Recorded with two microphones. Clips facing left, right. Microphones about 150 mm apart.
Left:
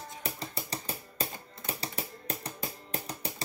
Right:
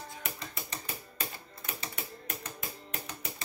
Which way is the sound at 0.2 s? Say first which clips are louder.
Left 4 dB; 35° left (ahead or behind).